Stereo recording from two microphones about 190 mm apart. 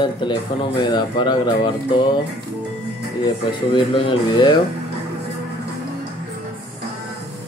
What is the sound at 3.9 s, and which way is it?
Speech, 30° left (ahead or behind).